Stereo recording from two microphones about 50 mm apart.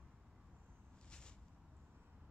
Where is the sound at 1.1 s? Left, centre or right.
Centre.